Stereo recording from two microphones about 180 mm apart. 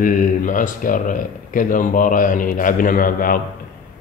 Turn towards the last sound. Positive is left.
turn(degrees=50)  # may be behind; listen again after turning